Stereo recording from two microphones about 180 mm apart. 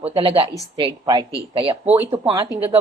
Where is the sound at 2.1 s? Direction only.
20° right (ahead or behind).